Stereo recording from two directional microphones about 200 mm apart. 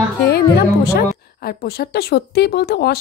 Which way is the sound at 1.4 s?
50° left (ahead or behind).